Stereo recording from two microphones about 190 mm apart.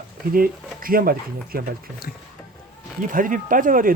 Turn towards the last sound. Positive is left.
turn(degrees=-45)  # may be behind; listen again after turning